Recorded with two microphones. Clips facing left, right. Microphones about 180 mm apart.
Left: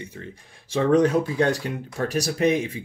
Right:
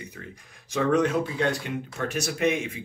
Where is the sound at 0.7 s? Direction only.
35° left (ahead or behind).